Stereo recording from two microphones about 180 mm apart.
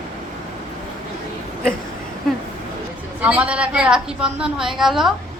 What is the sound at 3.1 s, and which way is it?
A woman's voice, 10° right (ahead or behind).